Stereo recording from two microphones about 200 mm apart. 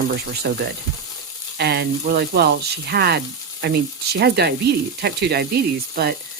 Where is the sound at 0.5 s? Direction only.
50° right (ahead or behind).